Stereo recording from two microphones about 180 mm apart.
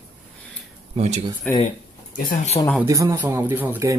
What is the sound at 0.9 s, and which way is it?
Speech, 40° right (ahead or behind).